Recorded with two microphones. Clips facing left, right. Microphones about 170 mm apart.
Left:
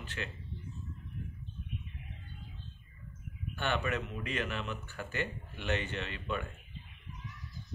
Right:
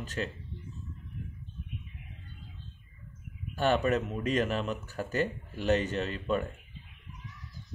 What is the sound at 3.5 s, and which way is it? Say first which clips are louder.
Speech: right 7 dB; 40° right (ahead or behind).